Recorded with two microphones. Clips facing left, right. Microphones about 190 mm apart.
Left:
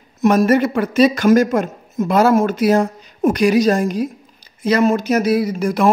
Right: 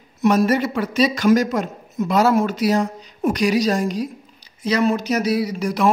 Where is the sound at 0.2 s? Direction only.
50° left (ahead or behind).